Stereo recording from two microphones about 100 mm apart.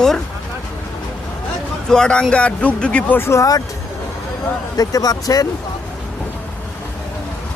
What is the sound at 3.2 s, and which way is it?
Speech, 30° left (ahead or behind).